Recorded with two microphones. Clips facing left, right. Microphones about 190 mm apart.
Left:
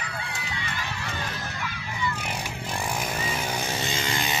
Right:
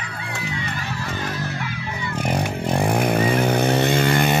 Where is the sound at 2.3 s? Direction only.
55° right (ahead or behind).